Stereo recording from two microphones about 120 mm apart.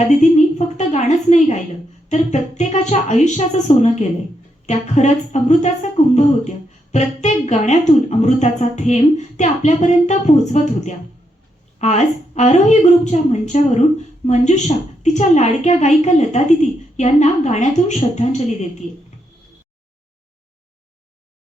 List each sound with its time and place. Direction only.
0.1 s a sound: 70° left (ahead or behind)
2.0 s a woman's voice: 70° left (ahead or behind)
11.8 s a woman's voice: 65° left (ahead or behind)